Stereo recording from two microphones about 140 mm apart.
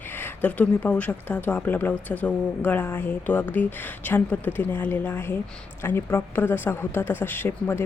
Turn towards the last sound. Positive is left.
turn(degrees=15)  # may be behind; listen again after turning